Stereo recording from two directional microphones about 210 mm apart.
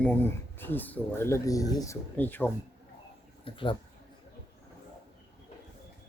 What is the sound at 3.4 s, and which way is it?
Speech, 25° left (ahead or behind).